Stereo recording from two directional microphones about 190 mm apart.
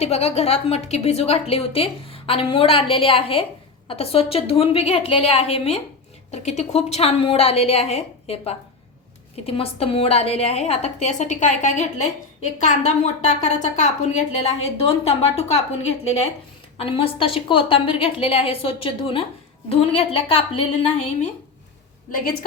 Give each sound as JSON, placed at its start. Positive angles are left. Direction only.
{"t": 0.0, "sound": "a woman's voice", "side_deg": 35}
{"t": 16.7, "sound": "a woman's voice", "side_deg": 30}